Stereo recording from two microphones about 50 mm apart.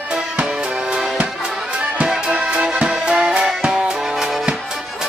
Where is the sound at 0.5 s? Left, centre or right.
Centre.